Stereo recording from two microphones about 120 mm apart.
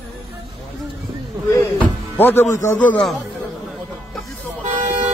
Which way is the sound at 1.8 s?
15° left (ahead or behind).